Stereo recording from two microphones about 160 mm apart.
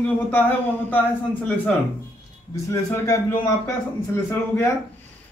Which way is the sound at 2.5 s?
20° left (ahead or behind).